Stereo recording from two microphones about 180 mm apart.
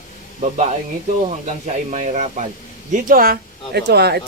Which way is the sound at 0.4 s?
40° right (ahead or behind).